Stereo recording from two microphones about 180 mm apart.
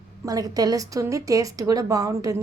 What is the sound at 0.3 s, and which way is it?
A woman's voice, 20° right (ahead or behind).